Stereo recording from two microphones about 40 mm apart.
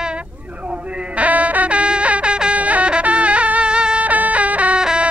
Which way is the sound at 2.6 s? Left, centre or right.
Right.